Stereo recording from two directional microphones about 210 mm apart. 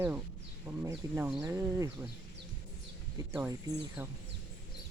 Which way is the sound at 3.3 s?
15° right (ahead or behind).